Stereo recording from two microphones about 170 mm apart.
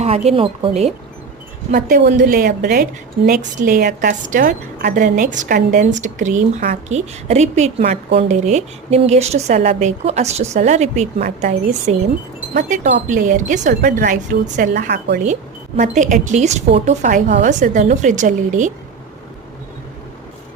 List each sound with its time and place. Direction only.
0.0 s a woman's voice: 40° right (ahead or behind)
1.7 s a woman's voice: 50° right (ahead or behind); by 2.8 s 65° right (ahead or behind)
3.2 s a woman's voice: 55° right (ahead or behind)
14.5 s speech: 60° right (ahead or behind)
15.2 s a woman's voice: 45° right (ahead or behind)